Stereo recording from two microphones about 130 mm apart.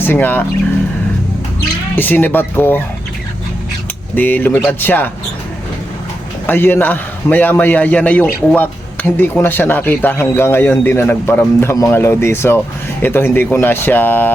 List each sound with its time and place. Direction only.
0.0 s speech: 15° left (ahead or behind)
2.0 s speech: 15° left (ahead or behind)
4.1 s speech: 15° left (ahead or behind)
6.5 s speech: 15° left (ahead or behind)